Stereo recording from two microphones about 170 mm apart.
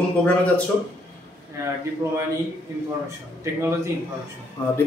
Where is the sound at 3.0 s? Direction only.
15° right (ahead or behind).